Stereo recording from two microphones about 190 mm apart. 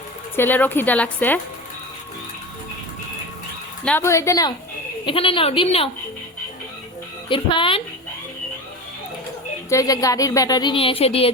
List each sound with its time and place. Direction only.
0.3 s speech: 10° left (ahead or behind)
3.8 s speech: 10° left (ahead or behind)
5.0 s a woman's voice: 30° left (ahead or behind)
7.3 s a woman's voice: 25° left (ahead or behind)
9.6 s a woman's voice: 15° left (ahead or behind)